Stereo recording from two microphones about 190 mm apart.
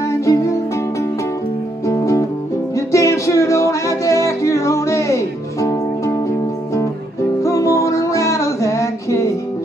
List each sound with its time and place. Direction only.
0.2 s music: 15° left (ahead or behind)
1.9 s music: 15° left (ahead or behind)
7.4 s music: 15° left (ahead or behind)